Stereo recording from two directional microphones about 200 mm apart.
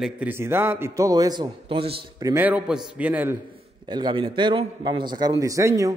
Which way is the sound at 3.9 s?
25° right (ahead or behind).